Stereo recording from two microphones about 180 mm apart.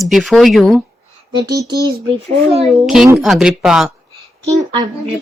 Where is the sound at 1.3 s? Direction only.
20° right (ahead or behind).